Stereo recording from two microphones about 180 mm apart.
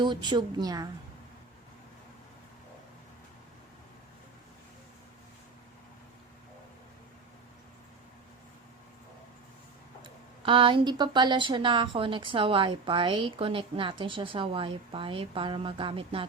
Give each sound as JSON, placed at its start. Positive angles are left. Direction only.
{"t": 0.0, "sound": "speech", "side_deg": -25}
{"t": 10.0, "sound": "speech", "side_deg": -30}